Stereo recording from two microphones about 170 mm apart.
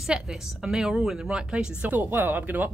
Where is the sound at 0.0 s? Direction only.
Centre (ahead or behind).